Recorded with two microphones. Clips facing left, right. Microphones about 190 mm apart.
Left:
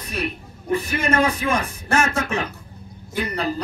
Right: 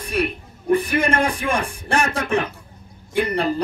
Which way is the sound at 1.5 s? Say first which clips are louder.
Even; 30° right (ahead or behind).